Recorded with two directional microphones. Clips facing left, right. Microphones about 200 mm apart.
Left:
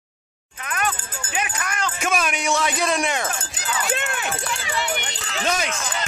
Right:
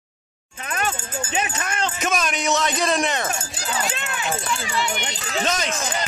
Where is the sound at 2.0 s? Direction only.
10° left (ahead or behind).